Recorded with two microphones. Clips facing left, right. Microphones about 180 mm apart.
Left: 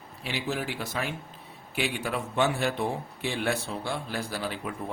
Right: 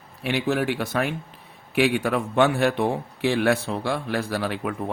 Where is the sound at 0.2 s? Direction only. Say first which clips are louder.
Right 8 dB; 65° right (ahead or behind).